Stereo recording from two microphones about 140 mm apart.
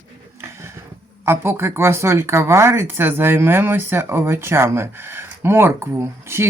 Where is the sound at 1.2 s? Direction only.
15° right (ahead or behind).